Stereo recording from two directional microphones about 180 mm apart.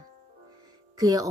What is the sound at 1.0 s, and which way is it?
Speech, 20° right (ahead or behind).